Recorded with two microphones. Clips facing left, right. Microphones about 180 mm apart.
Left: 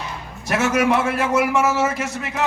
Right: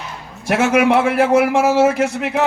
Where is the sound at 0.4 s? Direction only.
60° right (ahead or behind).